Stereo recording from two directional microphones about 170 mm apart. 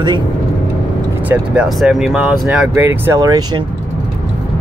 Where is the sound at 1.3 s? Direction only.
5° right (ahead or behind); by 3.6 s 20° right (ahead or behind).